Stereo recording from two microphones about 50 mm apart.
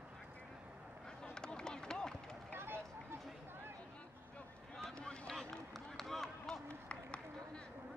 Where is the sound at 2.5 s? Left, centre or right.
Right.